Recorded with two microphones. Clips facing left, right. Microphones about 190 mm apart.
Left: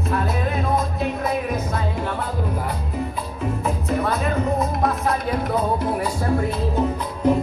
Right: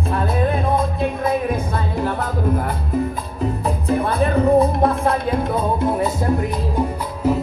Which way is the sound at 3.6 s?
30° right (ahead or behind).